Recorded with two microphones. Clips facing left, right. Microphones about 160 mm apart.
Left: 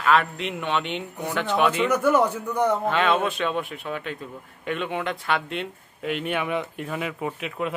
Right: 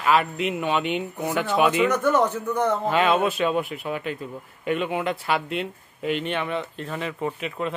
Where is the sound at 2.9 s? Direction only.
5° right (ahead or behind).